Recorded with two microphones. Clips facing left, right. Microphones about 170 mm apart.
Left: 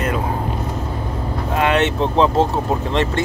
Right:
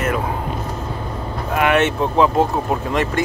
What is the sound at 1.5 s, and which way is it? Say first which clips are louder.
Speech: right 1 dB; 20° left (ahead or behind).